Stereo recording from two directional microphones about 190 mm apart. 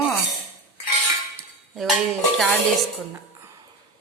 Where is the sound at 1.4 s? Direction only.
Centre (ahead or behind).